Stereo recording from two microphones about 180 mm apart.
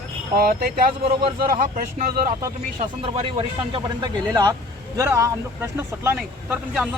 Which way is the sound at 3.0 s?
30° right (ahead or behind).